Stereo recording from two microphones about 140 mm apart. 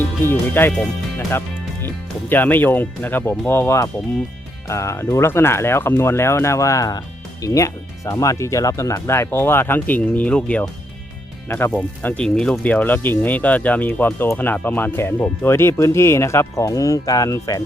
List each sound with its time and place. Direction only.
0.0 s speech: 15° left (ahead or behind)
1.1 s music: 15° left (ahead or behind)
2.3 s speech: 15° left (ahead or behind)